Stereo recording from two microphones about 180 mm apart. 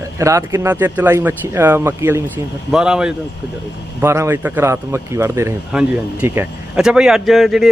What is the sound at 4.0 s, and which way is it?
Speech, 15° right (ahead or behind).